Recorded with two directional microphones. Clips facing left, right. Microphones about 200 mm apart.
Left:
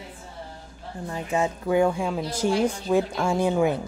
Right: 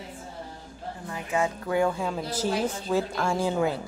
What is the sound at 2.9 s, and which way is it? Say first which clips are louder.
Speech: left 2 dB; 10° left (ahead or behind).